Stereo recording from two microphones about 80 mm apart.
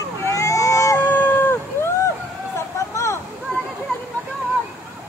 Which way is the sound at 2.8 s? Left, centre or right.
Left.